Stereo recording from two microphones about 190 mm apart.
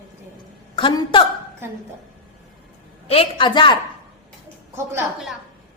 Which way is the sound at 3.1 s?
30° left (ahead or behind).